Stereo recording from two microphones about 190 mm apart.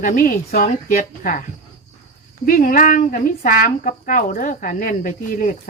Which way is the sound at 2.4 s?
45° left (ahead or behind).